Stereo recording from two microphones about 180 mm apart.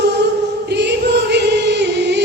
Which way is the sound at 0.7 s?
70° right (ahead or behind).